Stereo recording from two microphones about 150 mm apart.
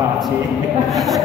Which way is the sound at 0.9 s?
Centre (ahead or behind).